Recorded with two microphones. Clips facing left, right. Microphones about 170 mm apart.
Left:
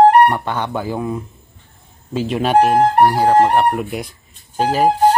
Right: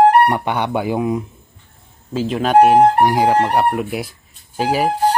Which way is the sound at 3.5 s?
Centre (ahead or behind).